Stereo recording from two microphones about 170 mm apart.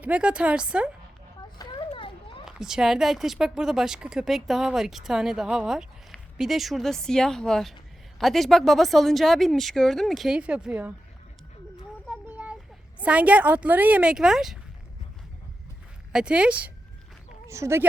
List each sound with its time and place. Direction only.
0.0 s speech: 5° right (ahead or behind)
1.5 s children playing: 30° left (ahead or behind)
2.4 s speech: 5° right (ahead or behind)
12.0 s a sound: 5° right (ahead or behind)
13.0 s speech: 10° right (ahead or behind)
16.1 s speech: 5° right (ahead or behind)